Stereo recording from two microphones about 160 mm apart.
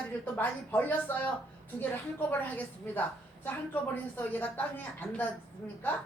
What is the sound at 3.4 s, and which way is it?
A woman's voice, 10° left (ahead or behind).